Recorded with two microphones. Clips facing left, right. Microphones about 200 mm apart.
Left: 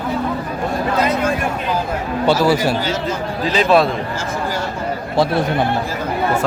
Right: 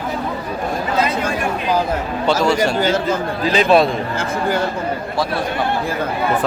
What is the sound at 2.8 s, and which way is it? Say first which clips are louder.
Speech: right 4 dB; 50° right (ahead or behind).